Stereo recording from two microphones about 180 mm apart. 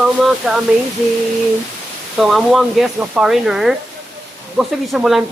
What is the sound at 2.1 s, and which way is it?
Speech, centre (ahead or behind).